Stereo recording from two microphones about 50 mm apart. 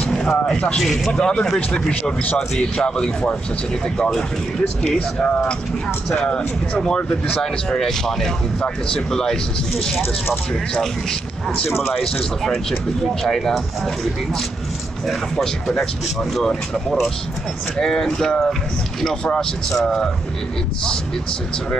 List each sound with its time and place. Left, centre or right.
0.1 s a sound: centre
0.7 s speech: centre
1.1 s speech: centre
7.3 s speech: centre
15.3 s speech: centre
19.7 s speech: centre